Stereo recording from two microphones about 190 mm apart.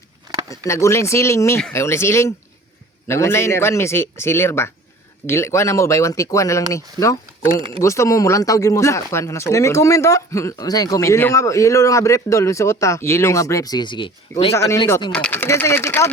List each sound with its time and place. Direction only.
0.7 s speech: 15° left (ahead or behind)
14.5 s speech: 15° left (ahead or behind)